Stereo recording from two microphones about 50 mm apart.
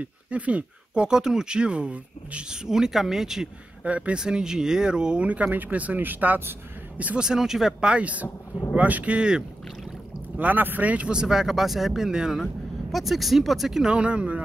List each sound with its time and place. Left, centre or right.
0.0 s speech: right
1.0 s speech: centre
2.6 s speech: centre
3.8 s speech: right
4.2 s speech: centre; by 6.5 s right
7.2 s speech: centre
7.9 s speech: right
10.3 s speech: right
11.1 s speech: centre
13.8 s speech: right